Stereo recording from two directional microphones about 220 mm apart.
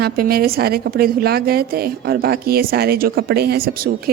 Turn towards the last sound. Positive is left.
turn(degrees=-45)  # may be behind; listen again after turning